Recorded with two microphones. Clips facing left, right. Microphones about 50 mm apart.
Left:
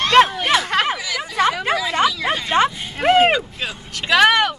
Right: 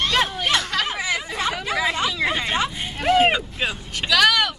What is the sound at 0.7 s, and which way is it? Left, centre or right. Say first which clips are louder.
Chatter: left 5 dB; left.